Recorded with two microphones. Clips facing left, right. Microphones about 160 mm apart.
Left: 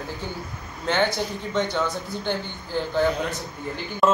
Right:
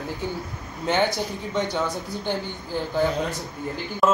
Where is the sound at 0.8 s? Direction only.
10° right (ahead or behind).